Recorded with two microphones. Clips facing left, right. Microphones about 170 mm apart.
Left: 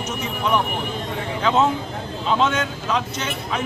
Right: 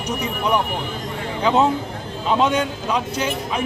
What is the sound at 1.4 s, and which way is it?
Speech, 15° right (ahead or behind).